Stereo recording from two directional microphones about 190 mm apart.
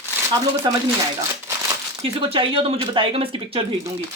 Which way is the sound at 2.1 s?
30° right (ahead or behind).